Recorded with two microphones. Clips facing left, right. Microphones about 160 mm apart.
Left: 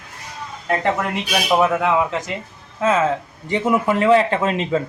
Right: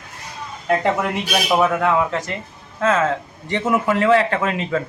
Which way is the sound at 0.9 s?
Centre (ahead or behind).